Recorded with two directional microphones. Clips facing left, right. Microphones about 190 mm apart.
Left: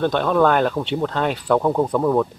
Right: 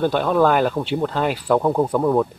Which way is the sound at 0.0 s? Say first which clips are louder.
Even; 5° right (ahead or behind).